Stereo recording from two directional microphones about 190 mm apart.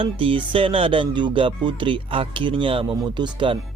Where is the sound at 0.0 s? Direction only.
25° right (ahead or behind).